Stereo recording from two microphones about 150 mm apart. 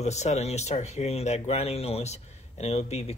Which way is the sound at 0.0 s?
50° left (ahead or behind).